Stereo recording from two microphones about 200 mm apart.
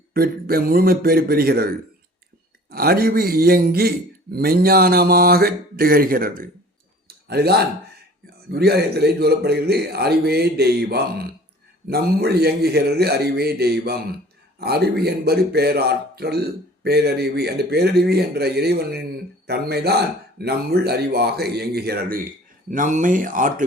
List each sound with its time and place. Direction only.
0.1 s a man's voice: 50° right (ahead or behind)